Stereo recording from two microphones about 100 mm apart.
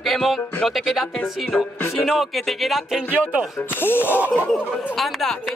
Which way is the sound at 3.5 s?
20° left (ahead or behind).